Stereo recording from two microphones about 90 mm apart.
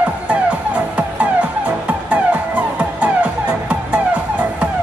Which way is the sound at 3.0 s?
15° right (ahead or behind).